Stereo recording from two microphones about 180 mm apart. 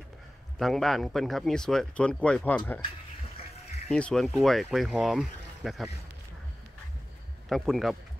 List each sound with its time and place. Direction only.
0.6 s speech: centre (ahead or behind)
3.9 s speech: 5° left (ahead or behind)
7.4 s speech: centre (ahead or behind)